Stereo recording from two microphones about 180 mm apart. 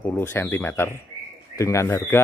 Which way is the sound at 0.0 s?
15° left (ahead or behind).